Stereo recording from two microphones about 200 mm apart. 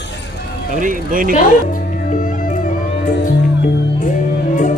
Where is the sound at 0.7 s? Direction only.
40° right (ahead or behind).